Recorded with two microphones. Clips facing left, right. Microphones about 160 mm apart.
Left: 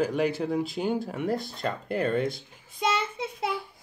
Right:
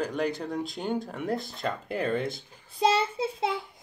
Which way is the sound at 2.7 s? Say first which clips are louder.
Right 4 dB; 30° right (ahead or behind).